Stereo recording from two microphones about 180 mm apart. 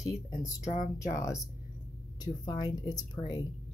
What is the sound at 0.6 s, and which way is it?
Speech, 40° left (ahead or behind).